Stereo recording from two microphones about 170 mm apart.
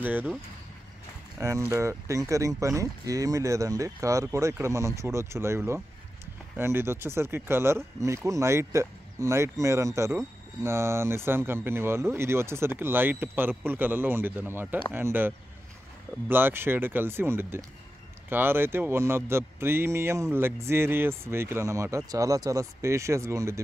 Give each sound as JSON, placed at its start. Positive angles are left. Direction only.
{"t": 0.0, "sound": "speech", "side_deg": -10}
{"t": 1.4, "sound": "speech", "side_deg": -15}